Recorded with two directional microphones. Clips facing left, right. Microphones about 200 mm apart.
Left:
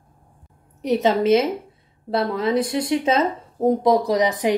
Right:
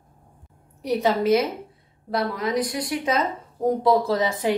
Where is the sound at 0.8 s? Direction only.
20° left (ahead or behind).